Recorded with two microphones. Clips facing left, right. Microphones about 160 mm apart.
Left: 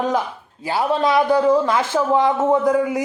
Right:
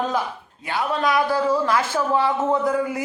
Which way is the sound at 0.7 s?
30° left (ahead or behind).